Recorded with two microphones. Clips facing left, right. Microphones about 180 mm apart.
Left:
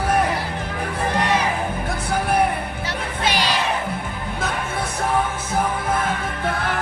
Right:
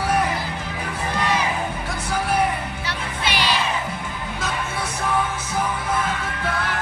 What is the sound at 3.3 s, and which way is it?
Crowd, 40° left (ahead or behind).